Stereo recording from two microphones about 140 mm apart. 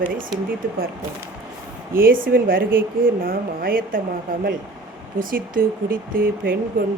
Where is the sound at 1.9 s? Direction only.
90° right.